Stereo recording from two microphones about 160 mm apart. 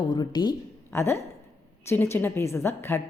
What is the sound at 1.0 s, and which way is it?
Speech, 15° left (ahead or behind).